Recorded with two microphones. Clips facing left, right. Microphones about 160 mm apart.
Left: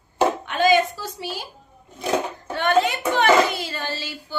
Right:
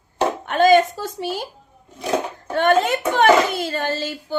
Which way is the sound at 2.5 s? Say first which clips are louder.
Right 3 dB; 50° right (ahead or behind).